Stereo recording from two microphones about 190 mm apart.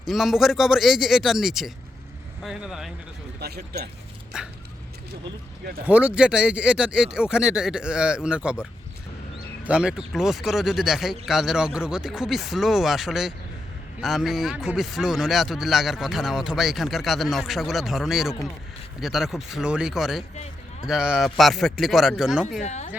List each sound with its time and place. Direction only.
0.1 s speech: centre (ahead or behind)
3.4 s speech: 55° right (ahead or behind)
4.3 s speech: 5° right (ahead or behind)
5.8 s speech: 5° right (ahead or behind)
9.6 s speech: 5° right (ahead or behind)
22.6 s speech: 35° left (ahead or behind)